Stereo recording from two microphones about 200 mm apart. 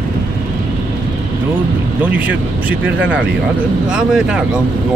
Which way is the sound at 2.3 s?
10° right (ahead or behind).